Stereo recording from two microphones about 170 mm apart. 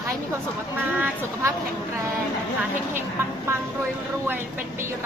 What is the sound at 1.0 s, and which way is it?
Speech, 15° right (ahead or behind).